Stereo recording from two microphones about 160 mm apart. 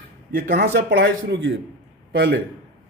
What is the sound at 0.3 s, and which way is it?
A man's voice, 65° right (ahead or behind).